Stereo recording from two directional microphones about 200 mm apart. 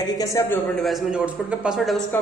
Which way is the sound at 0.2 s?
15° left (ahead or behind).